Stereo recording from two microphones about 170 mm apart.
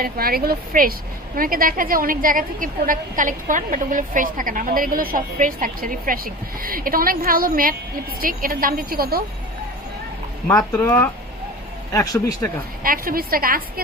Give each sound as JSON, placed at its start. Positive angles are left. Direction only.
{"t": 0.0, "sound": "a woman's voice", "side_deg": -60}
{"t": 10.5, "sound": "speech", "side_deg": 15}
{"t": 12.8, "sound": "a woman's voice", "side_deg": -55}